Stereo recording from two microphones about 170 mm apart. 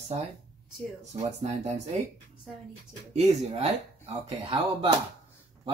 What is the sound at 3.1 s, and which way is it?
Speech, 40° right (ahead or behind).